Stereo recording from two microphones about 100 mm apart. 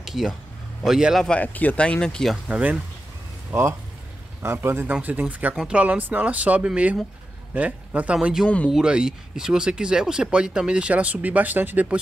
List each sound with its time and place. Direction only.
0.0 s a man's voice: 5° right (ahead or behind)
1.2 s speech: 15° left (ahead or behind)
2.4 s speech: 15° right (ahead or behind)
4.4 s a man's voice: 25° right (ahead or behind); by 8.5 s 5° right (ahead or behind)
8.5 s speech: 15° left (ahead or behind)
8.7 s speech: 5° right (ahead or behind)